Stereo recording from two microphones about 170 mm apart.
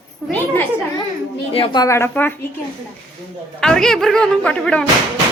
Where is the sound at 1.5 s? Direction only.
35° left (ahead or behind).